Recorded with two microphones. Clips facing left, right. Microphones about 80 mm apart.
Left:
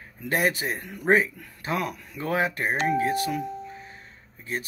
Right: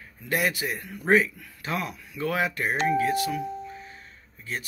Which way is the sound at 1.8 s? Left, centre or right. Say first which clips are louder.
Left 3 dB; left.